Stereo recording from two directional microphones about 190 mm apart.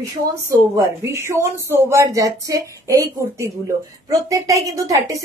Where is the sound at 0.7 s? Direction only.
15° right (ahead or behind).